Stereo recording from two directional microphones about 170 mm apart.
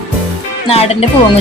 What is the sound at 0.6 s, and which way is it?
Speech, 35° left (ahead or behind).